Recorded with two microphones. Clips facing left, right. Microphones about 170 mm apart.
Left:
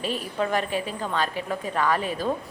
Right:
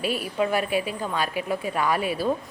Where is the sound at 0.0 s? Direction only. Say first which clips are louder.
Right 2 dB; 10° right (ahead or behind).